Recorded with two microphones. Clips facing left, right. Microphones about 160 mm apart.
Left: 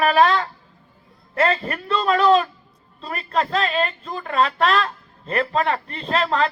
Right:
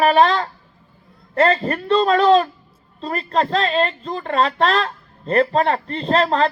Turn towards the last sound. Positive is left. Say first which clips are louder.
# right 4 dB
turn(degrees=-35)  # may be behind; listen again after turning